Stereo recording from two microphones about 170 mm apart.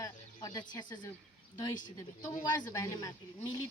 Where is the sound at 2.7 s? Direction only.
20° left (ahead or behind).